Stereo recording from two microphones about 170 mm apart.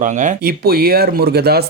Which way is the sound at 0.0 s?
50° right (ahead or behind).